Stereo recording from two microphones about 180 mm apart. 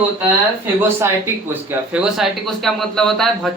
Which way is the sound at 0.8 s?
15° right (ahead or behind).